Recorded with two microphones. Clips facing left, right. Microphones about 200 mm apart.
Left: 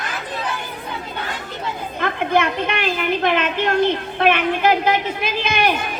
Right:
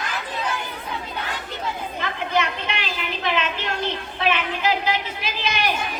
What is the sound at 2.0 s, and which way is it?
A woman's voice, 55° left (ahead or behind).